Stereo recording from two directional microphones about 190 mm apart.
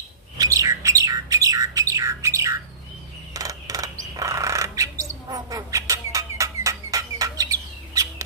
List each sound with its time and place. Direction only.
0.4 s bird: 15° right (ahead or behind)
3.3 s a sound: 20° right (ahead or behind)
4.0 s bird: 15° right (ahead or behind)